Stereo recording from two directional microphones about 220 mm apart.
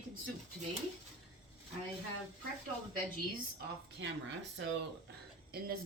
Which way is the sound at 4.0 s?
55° right (ahead or behind).